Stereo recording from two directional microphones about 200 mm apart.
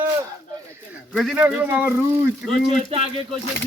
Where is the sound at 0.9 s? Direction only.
5° right (ahead or behind).